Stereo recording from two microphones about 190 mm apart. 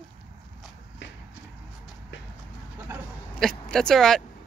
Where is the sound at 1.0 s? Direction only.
70° left (ahead or behind).